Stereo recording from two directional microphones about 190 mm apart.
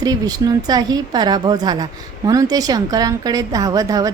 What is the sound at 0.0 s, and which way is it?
A woman's voice, 20° right (ahead or behind).